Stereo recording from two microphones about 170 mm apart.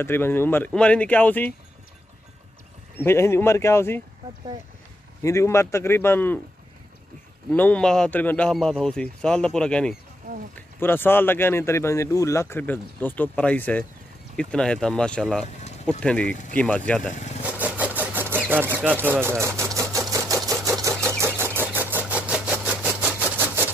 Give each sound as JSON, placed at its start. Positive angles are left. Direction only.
{"t": 0.0, "sound": "speech", "side_deg": 15}
{"t": 3.0, "sound": "speech", "side_deg": 15}
{"t": 5.2, "sound": "speech", "side_deg": 15}
{"t": 7.5, "sound": "a man's voice", "side_deg": 10}
{"t": 15.4, "sound": "a sound", "side_deg": 40}
{"t": 16.0, "sound": "speech", "side_deg": 5}
{"t": 17.1, "sound": "speech", "side_deg": 45}
{"t": 17.4, "sound": "vehicle", "side_deg": -10}
{"t": 18.4, "sound": "sewing machine", "side_deg": -10}
{"t": 21.2, "sound": "engine", "side_deg": -15}